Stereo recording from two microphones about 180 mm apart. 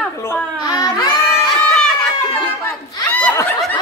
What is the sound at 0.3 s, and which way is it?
Babbling, 20° left (ahead or behind).